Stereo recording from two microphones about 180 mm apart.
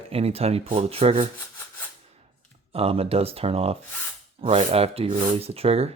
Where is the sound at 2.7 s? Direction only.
35° right (ahead or behind).